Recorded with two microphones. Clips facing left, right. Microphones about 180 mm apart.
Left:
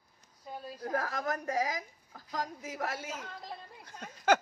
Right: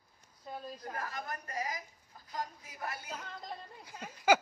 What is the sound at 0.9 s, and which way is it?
A woman's voice, 90° left.